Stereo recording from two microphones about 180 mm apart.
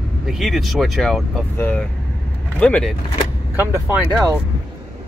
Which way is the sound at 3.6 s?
10° right (ahead or behind).